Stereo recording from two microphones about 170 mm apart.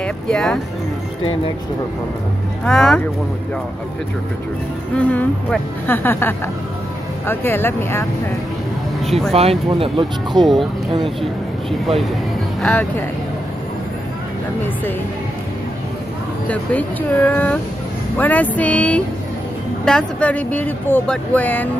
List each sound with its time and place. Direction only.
0.0 s speech: 5° left (ahead or behind)
2.6 s speech: 5° left (ahead or behind)
4.9 s speech: 10° left (ahead or behind)
9.0 s a sound: centre (ahead or behind)
9.3 s speech: 35° right (ahead or behind)
10.3 s speech: centre (ahead or behind)
12.6 s speech: 10° left (ahead or behind)
16.4 s speech: 10° left (ahead or behind)